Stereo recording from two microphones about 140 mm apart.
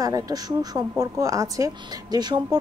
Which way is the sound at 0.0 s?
25° right (ahead or behind).